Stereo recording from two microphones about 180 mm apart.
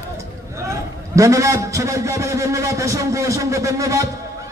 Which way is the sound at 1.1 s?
15° right (ahead or behind).